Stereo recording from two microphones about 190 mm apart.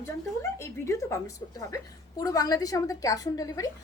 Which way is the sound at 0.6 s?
15° left (ahead or behind).